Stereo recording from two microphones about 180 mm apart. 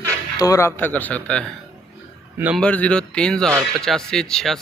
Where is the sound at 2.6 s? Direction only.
5° left (ahead or behind).